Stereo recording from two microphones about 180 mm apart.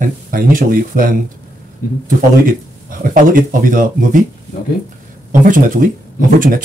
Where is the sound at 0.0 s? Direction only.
50° right (ahead or behind).